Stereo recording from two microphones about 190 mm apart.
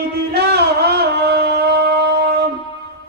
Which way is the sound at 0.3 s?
60° right (ahead or behind).